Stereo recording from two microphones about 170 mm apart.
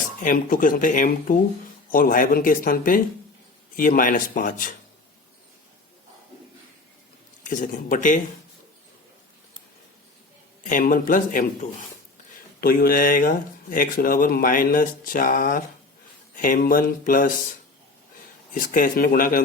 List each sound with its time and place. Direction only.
0.2 s speech: 50° left (ahead or behind)
7.4 s speech: 50° left (ahead or behind)
10.7 s speech: 55° left (ahead or behind)
18.5 s speech: 55° left (ahead or behind)